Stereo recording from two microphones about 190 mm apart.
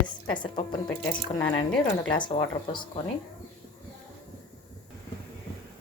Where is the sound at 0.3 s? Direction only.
25° left (ahead or behind).